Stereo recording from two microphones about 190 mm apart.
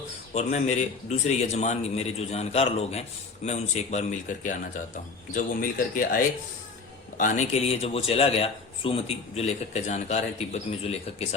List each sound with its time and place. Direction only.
0.3 s a man's voice: 35° left (ahead or behind)